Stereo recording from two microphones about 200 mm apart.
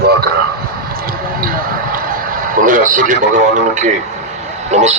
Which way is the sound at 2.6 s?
40° right (ahead or behind).